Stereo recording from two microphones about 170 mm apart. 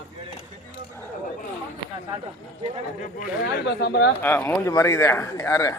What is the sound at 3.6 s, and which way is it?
Speech, 85° left.